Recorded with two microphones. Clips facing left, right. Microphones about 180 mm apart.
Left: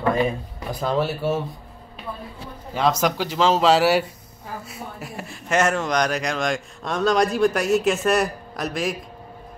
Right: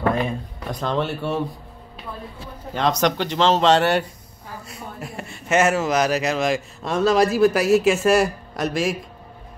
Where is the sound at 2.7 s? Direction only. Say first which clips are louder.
Right 1 dB; 5° left (ahead or behind).